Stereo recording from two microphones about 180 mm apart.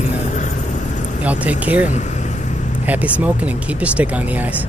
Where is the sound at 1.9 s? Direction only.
40° left (ahead or behind).